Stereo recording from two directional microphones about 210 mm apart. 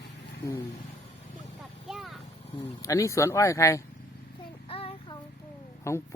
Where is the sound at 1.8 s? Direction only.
Centre (ahead or behind).